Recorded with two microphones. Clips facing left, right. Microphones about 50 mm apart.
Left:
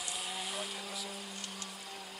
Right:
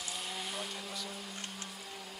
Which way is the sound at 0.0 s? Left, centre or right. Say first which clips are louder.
Even; centre.